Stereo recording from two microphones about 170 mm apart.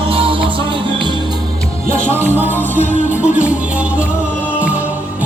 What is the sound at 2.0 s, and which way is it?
Music, 10° right (ahead or behind).